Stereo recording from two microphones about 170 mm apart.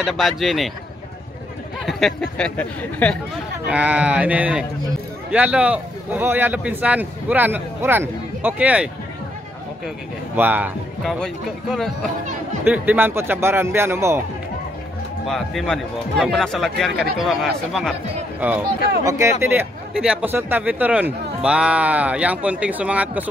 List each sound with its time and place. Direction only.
0.0 s a man's voice: centre (ahead or behind)
1.9 s a man's voice: centre (ahead or behind)
3.6 s speech: 5° right (ahead or behind)
10.3 s a man's voice: 10° right (ahead or behind)
12.6 s speech: 10° right (ahead or behind)
15.2 s a man's voice: centre (ahead or behind)
19.0 s speech: 15° right (ahead or behind)